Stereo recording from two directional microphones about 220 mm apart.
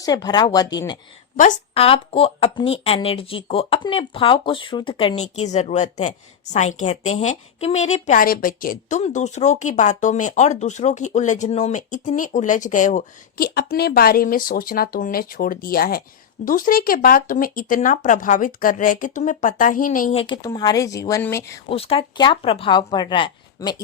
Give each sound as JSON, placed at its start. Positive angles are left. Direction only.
{"t": 0.0, "sound": "speech", "side_deg": 15}
{"t": 1.4, "sound": "a woman's voice", "side_deg": 30}
{"t": 20.3, "sound": "speech", "side_deg": 15}
{"t": 21.7, "sound": "a woman's voice", "side_deg": 25}